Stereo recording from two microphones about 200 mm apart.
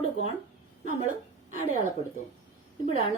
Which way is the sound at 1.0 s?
40° right (ahead or behind).